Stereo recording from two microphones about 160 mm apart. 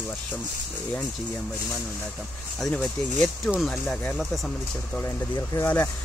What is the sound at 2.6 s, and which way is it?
Speech, centre (ahead or behind).